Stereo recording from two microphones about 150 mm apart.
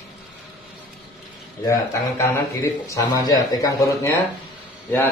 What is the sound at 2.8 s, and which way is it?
A man's voice, 25° left (ahead or behind).